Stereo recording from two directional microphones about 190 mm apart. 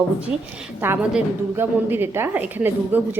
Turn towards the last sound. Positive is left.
turn(degrees=-10)  # may be behind; listen again after turning